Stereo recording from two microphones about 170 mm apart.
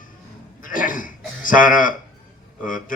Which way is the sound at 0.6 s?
50° left (ahead or behind).